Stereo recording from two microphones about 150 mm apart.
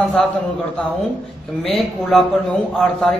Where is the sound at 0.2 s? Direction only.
5° left (ahead or behind).